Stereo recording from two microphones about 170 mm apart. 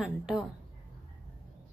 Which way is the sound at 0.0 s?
5° right (ahead or behind).